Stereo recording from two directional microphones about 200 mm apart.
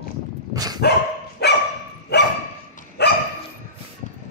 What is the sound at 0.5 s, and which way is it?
Dog, 20° right (ahead or behind).